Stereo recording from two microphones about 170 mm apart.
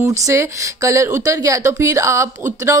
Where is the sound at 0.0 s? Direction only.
15° right (ahead or behind).